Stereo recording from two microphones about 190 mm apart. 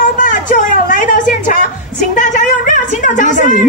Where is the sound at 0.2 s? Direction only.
45° left (ahead or behind).